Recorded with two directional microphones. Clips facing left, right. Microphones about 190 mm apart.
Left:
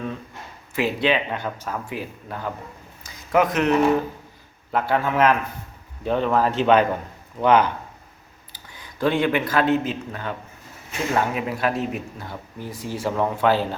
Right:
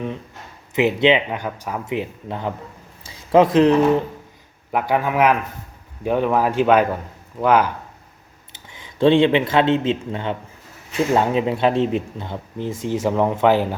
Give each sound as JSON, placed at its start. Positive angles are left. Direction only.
{"t": 0.7, "sound": "a man's voice", "side_deg": -20}
{"t": 4.7, "sound": "a man's voice", "side_deg": -15}
{"t": 8.5, "sound": "a man's voice", "side_deg": -20}